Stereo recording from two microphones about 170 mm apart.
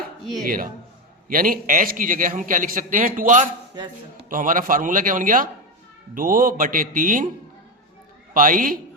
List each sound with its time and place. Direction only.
0.4 s a man's voice: 55° right (ahead or behind)
8.3 s a man's voice: 55° right (ahead or behind)